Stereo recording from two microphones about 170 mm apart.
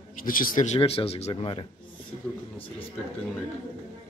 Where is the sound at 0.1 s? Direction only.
55° left (ahead or behind).